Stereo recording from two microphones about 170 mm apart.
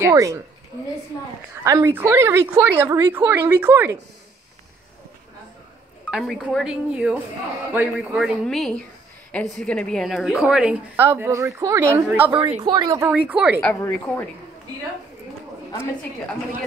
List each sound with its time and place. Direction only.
0.0 s a woman's voice: 20° right (ahead or behind)
1.6 s a woman's voice: 15° right (ahead or behind)
6.0 s a woman's voice: 5° right (ahead or behind); by 13.0 s 25° right (ahead or behind)
13.0 s a woman's voice: 5° right (ahead or behind)
13.6 s a woman's voice: 10° left (ahead or behind)